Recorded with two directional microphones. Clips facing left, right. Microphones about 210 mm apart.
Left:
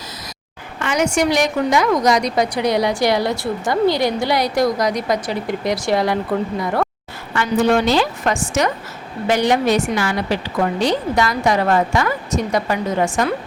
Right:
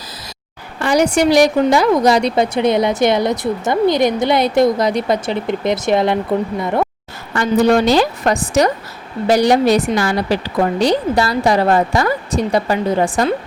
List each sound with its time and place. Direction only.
0.8 s a woman's voice: 35° right (ahead or behind)
7.3 s a woman's voice: 40° right (ahead or behind)